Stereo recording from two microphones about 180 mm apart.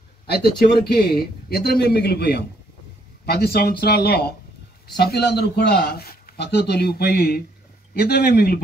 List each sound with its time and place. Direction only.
0.3 s a man's voice: 60° left (ahead or behind)